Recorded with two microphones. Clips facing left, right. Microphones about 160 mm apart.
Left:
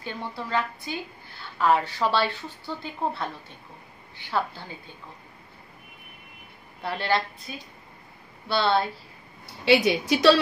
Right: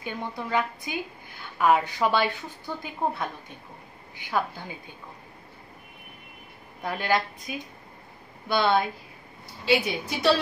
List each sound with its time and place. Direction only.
0.0 s a woman's voice: 15° right (ahead or behind)
6.8 s a woman's voice: 10° right (ahead or behind)
9.7 s a woman's voice: 80° left